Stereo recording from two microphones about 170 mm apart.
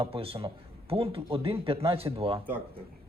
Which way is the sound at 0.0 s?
35° right (ahead or behind).